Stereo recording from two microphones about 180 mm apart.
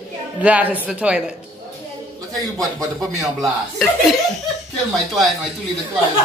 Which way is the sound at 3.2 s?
Centre (ahead or behind).